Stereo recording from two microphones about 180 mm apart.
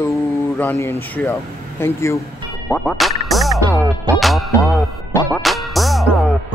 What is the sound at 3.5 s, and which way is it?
Music, 20° right (ahead or behind).